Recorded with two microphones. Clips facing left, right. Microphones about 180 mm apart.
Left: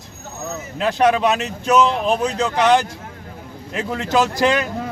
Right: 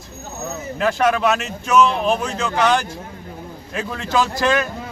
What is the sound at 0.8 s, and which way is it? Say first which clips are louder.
Speech: left 2 dB; 20° left (ahead or behind).